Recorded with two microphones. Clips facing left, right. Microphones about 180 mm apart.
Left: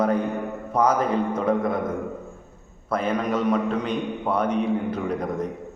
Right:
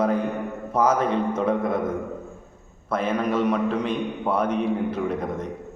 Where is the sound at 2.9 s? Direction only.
Centre (ahead or behind).